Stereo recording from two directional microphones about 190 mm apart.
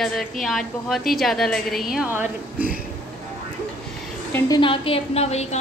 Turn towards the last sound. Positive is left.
turn(degrees=35)  # may be behind; listen again after turning